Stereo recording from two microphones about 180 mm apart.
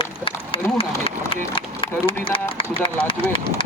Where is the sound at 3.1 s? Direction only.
30° left (ahead or behind).